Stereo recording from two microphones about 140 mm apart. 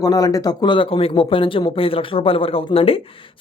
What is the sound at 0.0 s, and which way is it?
Speech, 25° left (ahead or behind).